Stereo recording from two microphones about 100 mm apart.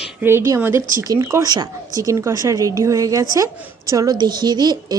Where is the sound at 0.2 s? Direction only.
25° right (ahead or behind).